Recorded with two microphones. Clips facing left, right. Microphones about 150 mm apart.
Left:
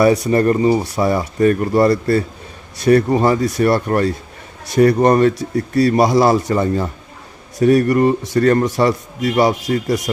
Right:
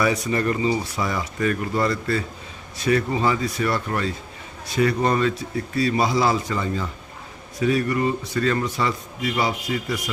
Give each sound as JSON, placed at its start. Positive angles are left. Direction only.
{"t": 0.3, "sound": "speech", "side_deg": 40}
{"t": 0.9, "sound": "speech", "side_deg": 35}
{"t": 6.0, "sound": "a man's voice", "side_deg": 65}
{"t": 8.6, "sound": "a man's voice", "side_deg": 70}
{"t": 9.5, "sound": "speech", "side_deg": 40}